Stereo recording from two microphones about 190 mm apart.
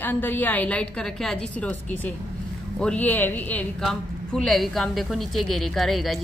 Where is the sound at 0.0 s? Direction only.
10° left (ahead or behind).